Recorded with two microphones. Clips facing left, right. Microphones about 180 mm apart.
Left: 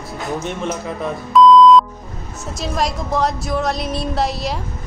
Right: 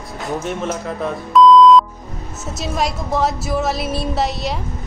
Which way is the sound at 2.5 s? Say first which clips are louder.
Even; centre (ahead or behind).